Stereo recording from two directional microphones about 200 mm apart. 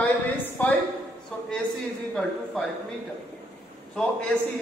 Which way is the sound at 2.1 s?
Centre (ahead or behind).